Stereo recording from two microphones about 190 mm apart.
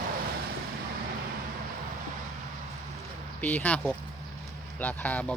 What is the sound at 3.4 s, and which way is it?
Speech, 10° left (ahead or behind).